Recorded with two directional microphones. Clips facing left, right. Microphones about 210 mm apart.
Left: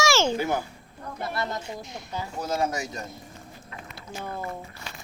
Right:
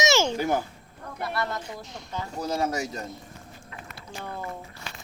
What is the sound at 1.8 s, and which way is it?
Speech, 10° left (ahead or behind).